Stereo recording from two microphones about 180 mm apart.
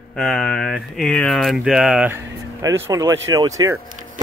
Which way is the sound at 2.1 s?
15° right (ahead or behind).